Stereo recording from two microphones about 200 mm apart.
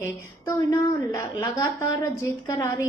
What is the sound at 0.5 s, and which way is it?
A woman's voice, 15° left (ahead or behind).